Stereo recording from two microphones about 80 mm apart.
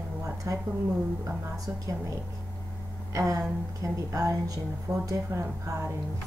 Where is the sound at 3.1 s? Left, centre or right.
Right.